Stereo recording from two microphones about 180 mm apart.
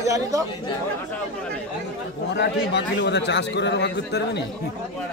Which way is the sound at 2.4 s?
70° left (ahead or behind).